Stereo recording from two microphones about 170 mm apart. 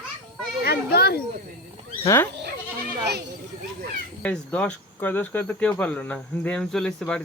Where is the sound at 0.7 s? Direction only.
70° left (ahead or behind).